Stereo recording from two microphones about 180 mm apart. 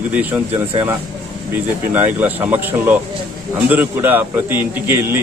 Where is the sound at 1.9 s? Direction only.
10° right (ahead or behind).